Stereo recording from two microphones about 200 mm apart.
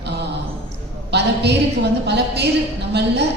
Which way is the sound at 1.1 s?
55° right (ahead or behind).